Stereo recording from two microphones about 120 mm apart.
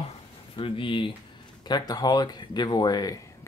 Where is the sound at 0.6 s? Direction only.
45° left (ahead or behind).